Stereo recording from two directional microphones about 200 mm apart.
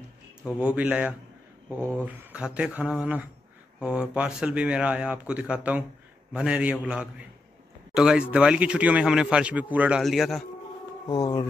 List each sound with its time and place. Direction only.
0.5 s speech: 5° right (ahead or behind)
11.1 s speech: 20° left (ahead or behind)